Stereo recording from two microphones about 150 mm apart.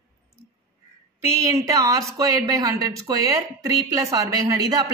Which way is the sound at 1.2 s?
20° right (ahead or behind).